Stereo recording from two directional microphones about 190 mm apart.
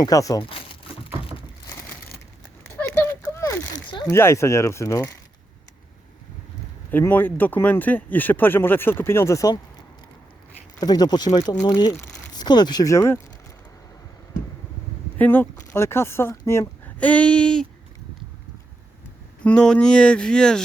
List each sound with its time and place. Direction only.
0.0 s speech: 20° left (ahead or behind)
2.8 s a sound: 15° left (ahead or behind)
3.8 s speech: 20° left (ahead or behind)
6.9 s speech: 10° left (ahead or behind)
10.8 s speech: 20° left (ahead or behind)
15.2 s speech: 10° left (ahead or behind)
19.5 s speech: 5° left (ahead or behind)